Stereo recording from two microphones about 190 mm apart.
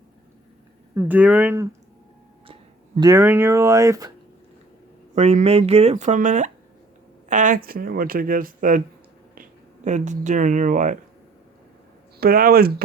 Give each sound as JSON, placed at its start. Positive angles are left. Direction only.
{"t": 0.9, "sound": "speech", "side_deg": -10}
{"t": 2.5, "sound": "a sound", "side_deg": -30}
{"t": 3.1, "sound": "speech", "side_deg": -15}
{"t": 5.1, "sound": "speech", "side_deg": -35}
{"t": 12.2, "sound": "speech", "side_deg": -50}